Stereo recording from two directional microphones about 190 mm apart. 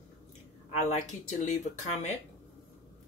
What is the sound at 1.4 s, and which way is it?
Speech, 40° left (ahead or behind).